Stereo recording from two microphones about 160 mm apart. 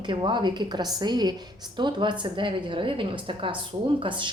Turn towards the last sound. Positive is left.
turn(degrees=-30)  # may be behind; listen again after turning